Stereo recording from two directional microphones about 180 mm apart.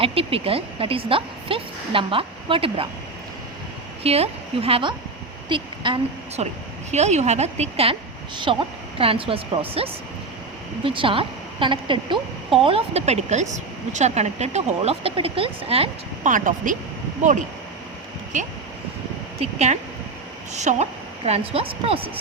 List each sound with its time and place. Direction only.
0.0 s a woman's voice: 30° right (ahead or behind)
4.0 s a woman's voice: 35° right (ahead or behind)
16.2 s speech: 45° right (ahead or behind)
19.4 s a woman's voice: 40° right (ahead or behind)